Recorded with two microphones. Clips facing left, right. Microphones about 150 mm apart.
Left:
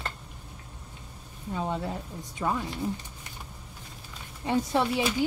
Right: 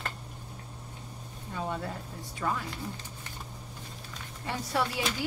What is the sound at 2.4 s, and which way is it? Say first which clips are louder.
Speech: left 3 dB; 20° left (ahead or behind).